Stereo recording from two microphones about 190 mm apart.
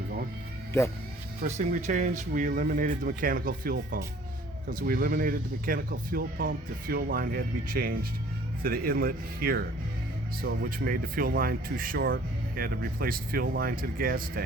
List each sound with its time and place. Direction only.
1.4 s speech: 40° right (ahead or behind)